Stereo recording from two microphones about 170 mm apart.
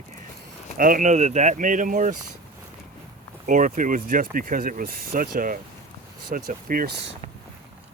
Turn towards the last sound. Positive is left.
turn(degrees=-70)  # may be behind; listen again after turning